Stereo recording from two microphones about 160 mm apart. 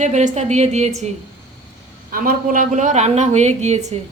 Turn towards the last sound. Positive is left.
turn(degrees=-45)  # may be behind; listen again after turning